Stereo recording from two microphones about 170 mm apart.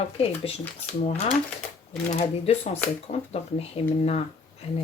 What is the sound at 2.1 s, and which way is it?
Speech, 40° left (ahead or behind).